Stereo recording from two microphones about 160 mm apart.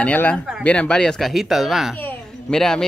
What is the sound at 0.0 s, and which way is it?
Speech, 10° left (ahead or behind).